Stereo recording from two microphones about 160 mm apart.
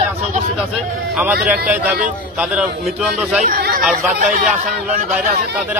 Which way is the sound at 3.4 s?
70° right (ahead or behind).